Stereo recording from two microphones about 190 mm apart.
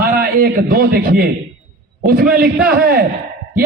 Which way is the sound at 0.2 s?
50° right (ahead or behind).